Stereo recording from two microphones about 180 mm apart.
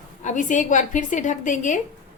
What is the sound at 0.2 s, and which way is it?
A woman's voice, 45° left (ahead or behind).